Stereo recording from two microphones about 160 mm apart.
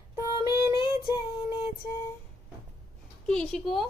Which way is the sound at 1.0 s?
30° left (ahead or behind).